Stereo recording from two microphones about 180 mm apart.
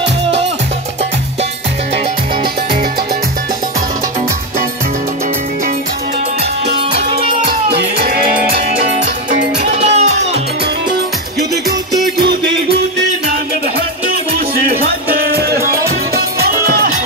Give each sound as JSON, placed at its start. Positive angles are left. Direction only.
{"t": 9.6, "sound": "music", "side_deg": -40}
{"t": 14.9, "sound": "music", "side_deg": -60}